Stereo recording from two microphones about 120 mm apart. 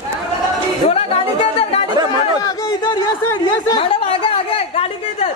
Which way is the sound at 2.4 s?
35° left (ahead or behind).